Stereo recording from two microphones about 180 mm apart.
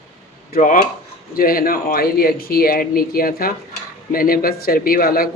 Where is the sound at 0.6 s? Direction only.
45° left (ahead or behind).